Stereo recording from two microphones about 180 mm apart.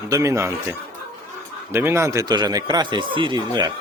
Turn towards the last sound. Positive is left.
turn(degrees=-25)  # may be behind; listen again after turning